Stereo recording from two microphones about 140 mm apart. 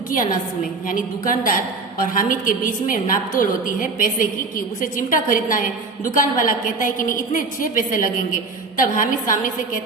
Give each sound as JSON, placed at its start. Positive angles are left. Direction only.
{"t": 0.9, "sound": "a woman's voice", "side_deg": 80}